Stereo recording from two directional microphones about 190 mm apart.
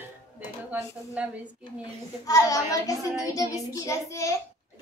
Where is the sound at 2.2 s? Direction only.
20° left (ahead or behind).